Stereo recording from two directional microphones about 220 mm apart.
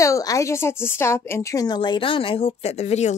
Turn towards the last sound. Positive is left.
turn(degrees=30)  # may be behind; listen again after turning